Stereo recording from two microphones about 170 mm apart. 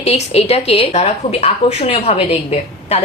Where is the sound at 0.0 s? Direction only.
40° left (ahead or behind).